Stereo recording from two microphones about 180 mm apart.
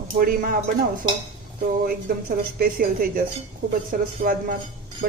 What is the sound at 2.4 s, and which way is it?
Speech, 55° right (ahead or behind).